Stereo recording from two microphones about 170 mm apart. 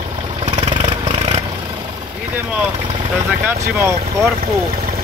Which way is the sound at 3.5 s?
15° right (ahead or behind).